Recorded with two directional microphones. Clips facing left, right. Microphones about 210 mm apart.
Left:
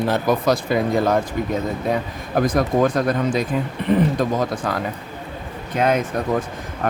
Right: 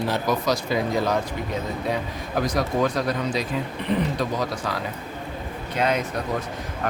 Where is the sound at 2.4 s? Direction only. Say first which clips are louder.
Left 5 dB; 50° left (ahead or behind).